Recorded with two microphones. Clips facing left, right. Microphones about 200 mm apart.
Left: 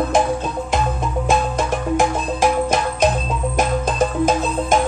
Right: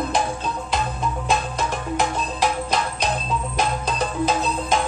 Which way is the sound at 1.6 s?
45° left (ahead or behind).